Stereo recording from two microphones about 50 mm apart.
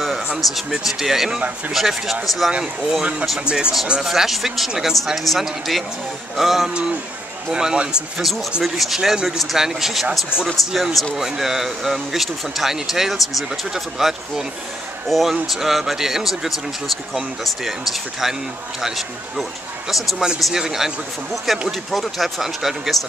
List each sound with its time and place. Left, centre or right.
0.4 s speech: centre
3.3 s speech: right
4.0 s speech: centre
6.7 s speech: centre
8.2 s speech: centre
18.2 s speech: centre